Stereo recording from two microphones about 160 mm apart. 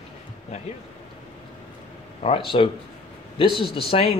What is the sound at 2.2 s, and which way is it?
Speech, 35° left (ahead or behind).